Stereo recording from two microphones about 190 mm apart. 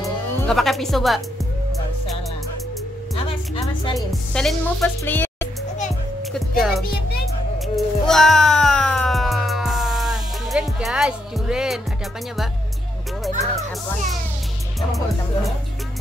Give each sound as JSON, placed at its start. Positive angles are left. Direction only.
{"t": 0.5, "sound": "speech", "side_deg": 0}
{"t": 3.6, "sound": "music", "side_deg": 20}
{"t": 4.1, "sound": "music", "side_deg": 0}
{"t": 6.3, "sound": "speech", "side_deg": 0}
{"t": 6.8, "sound": "music", "side_deg": 55}
{"t": 7.5, "sound": "music", "side_deg": 0}